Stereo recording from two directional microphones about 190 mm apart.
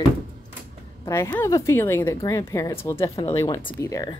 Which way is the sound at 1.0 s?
15° left (ahead or behind).